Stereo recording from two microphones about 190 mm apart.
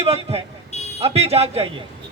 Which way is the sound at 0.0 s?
30° right (ahead or behind).